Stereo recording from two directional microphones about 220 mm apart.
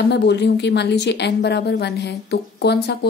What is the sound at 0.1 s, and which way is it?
Speech, 50° left (ahead or behind).